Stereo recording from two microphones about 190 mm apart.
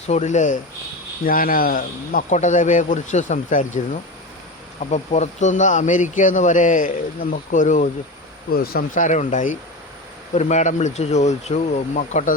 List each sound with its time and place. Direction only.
0.1 s speech: 40° left (ahead or behind)
8.5 s speech: 50° left (ahead or behind)